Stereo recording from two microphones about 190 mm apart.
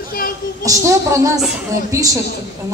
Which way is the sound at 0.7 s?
15° right (ahead or behind).